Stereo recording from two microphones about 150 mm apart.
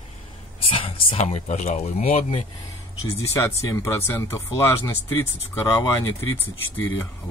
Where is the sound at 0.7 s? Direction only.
40° left (ahead or behind).